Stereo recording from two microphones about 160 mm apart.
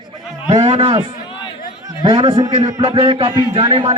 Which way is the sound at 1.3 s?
30° left (ahead or behind).